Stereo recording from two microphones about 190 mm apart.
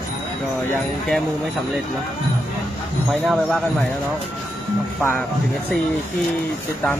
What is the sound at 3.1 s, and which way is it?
Speech, centre (ahead or behind).